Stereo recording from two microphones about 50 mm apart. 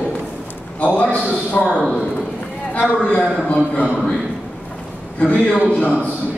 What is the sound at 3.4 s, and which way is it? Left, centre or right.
Speech, left.